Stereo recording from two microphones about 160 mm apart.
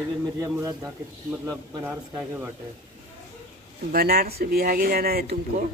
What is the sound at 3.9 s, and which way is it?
Speech, 70° right (ahead or behind).